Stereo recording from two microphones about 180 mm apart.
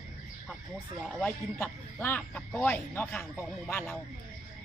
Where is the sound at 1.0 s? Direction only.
5° left (ahead or behind).